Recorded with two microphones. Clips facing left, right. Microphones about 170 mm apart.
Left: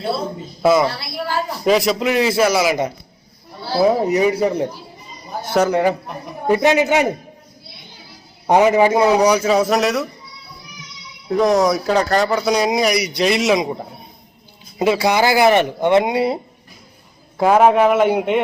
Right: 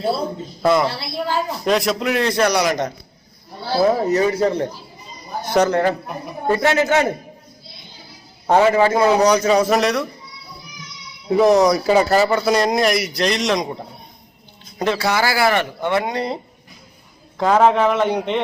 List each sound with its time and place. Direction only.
0.6 s speech: centre (ahead or behind)
0.9 s a woman's voice: 25° right (ahead or behind)
1.6 s speech: centre (ahead or behind)
8.4 s speech: 15° left (ahead or behind)
11.3 s speech: 5° right (ahead or behind)